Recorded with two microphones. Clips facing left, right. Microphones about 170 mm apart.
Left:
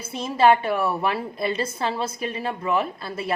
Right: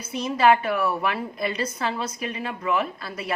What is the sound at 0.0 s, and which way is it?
A woman's voice, 25° left (ahead or behind).